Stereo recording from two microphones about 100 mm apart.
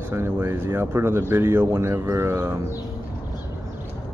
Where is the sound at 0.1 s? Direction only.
25° right (ahead or behind).